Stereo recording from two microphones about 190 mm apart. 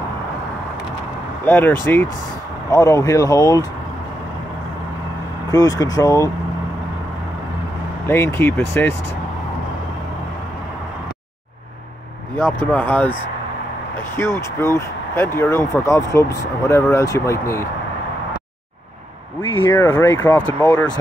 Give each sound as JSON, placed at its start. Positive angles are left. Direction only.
{"t": 1.4, "sound": "speech", "side_deg": 10}
{"t": 5.5, "sound": "speech", "side_deg": 20}
{"t": 8.1, "sound": "speech", "side_deg": 10}
{"t": 12.7, "sound": "speech", "side_deg": 10}
{"t": 14.1, "sound": "speech", "side_deg": 15}
{"t": 19.6, "sound": "speech", "side_deg": 15}